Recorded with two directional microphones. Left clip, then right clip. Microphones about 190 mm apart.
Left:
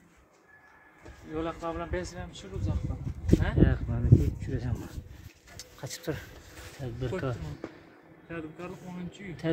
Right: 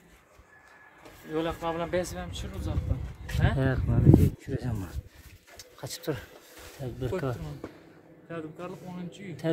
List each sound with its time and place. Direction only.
1.3 s speech: 60° right (ahead or behind)
3.3 s speech: 40° right (ahead or behind)
5.8 s speech: 15° right (ahead or behind)
8.3 s speech: 20° right (ahead or behind)